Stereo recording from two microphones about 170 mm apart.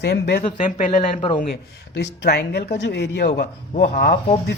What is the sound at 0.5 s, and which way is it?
Speech, 50° left (ahead or behind).